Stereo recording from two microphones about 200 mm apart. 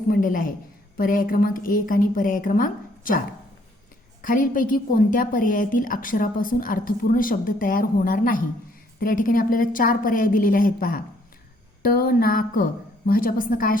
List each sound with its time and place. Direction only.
0.1 s a woman's voice: 45° left (ahead or behind)